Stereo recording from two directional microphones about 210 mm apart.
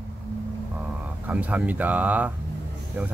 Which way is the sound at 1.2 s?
5° right (ahead or behind).